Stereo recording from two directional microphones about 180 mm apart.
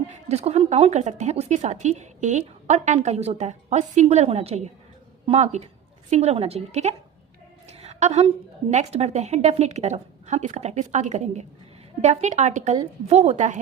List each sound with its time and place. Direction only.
0.1 s a woman's voice: 35° right (ahead or behind)
7.7 s a sound: 40° right (ahead or behind)
8.7 s speech: 40° right (ahead or behind)